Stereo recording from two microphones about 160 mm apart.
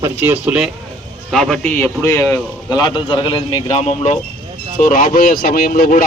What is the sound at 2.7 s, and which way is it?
A man's voice, 30° left (ahead or behind).